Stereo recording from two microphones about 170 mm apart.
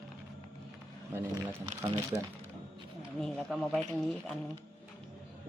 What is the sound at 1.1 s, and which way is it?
Speech, 20° right (ahead or behind).